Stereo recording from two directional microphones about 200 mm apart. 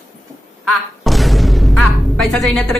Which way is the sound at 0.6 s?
Centre (ahead or behind).